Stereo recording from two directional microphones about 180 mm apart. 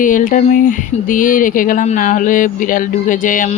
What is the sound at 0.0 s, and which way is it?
Speech, 45° left (ahead or behind).